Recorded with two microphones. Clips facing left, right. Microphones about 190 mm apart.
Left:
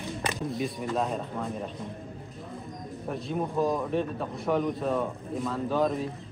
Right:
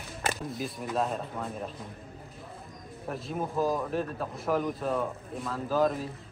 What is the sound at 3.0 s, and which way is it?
A man's voice, centre (ahead or behind).